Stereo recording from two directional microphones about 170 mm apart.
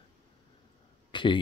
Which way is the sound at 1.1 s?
30° left (ahead or behind).